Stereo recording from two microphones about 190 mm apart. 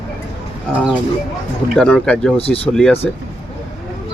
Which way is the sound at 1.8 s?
5° left (ahead or behind).